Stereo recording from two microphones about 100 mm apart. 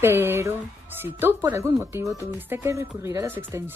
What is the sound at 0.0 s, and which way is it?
Speech, 20° right (ahead or behind).